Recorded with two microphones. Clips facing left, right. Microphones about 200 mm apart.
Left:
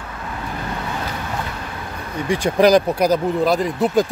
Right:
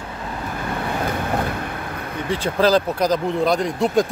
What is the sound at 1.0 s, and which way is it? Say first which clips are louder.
Vehicle: right 4 dB; 55° right (ahead or behind).